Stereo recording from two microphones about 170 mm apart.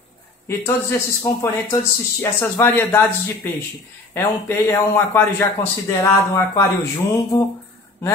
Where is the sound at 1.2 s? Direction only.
20° left (ahead or behind).